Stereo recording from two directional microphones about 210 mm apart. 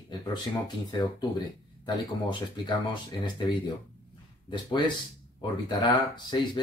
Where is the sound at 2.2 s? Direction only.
20° left (ahead or behind).